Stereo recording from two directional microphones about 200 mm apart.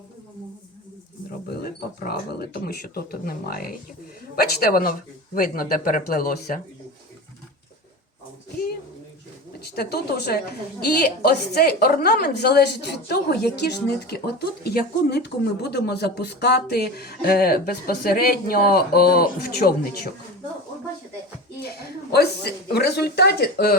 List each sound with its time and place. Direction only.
1.3 s wild animals: 50° left (ahead or behind)
2.0 s a woman's voice: 50° left (ahead or behind)
9.7 s a woman's voice: 50° left (ahead or behind)
21.6 s a woman's voice: 55° left (ahead or behind)